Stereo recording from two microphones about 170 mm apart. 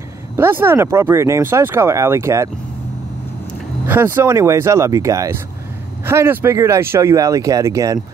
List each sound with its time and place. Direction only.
0.4 s speech: 15° right (ahead or behind)
3.8 s speech: 15° right (ahead or behind)